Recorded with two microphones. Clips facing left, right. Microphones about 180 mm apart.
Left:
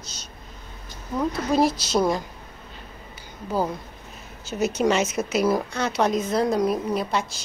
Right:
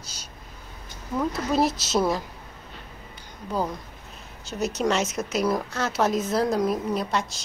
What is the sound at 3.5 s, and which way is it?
Speech, 5° left (ahead or behind).